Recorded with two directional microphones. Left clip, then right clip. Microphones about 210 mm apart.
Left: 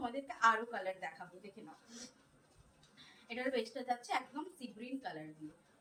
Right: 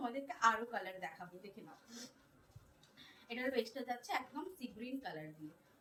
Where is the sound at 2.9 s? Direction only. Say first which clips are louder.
Left 2 dB; 15° left (ahead or behind).